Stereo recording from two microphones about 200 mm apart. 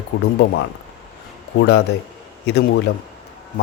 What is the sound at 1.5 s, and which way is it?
A man's voice, 60° left (ahead or behind).